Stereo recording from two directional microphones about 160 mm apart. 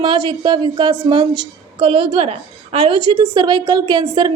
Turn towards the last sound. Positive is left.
turn(degrees=-30)  # may be behind; listen again after turning